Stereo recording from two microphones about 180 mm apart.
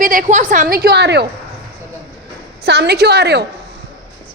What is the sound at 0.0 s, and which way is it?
A woman's voice, 50° right (ahead or behind).